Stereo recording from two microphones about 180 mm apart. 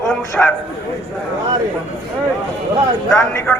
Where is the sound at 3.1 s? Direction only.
15° left (ahead or behind).